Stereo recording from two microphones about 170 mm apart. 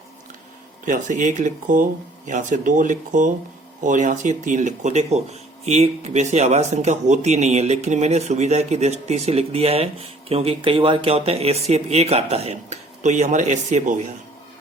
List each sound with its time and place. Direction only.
0.9 s speech: 50° right (ahead or behind)